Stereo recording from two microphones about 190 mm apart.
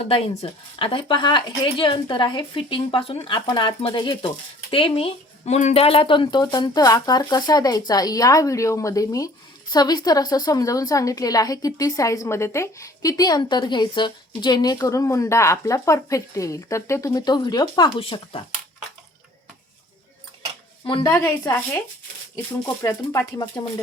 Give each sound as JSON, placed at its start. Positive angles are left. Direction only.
{"t": 0.4, "sound": "a woman's voice", "side_deg": 30}
{"t": 20.8, "sound": "speech", "side_deg": 20}